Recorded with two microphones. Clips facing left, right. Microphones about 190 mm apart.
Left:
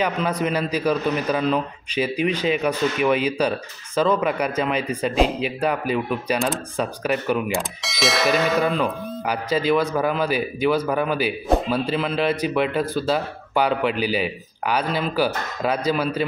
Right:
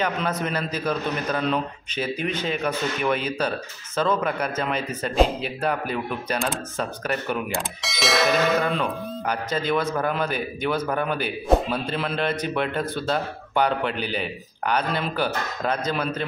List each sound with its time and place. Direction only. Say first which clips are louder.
0.0 s a man's voice: left 3 dB; 10° left (ahead or behind)